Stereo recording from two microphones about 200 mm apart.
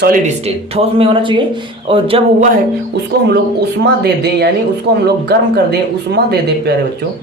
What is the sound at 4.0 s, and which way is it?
Speech, 55° right (ahead or behind).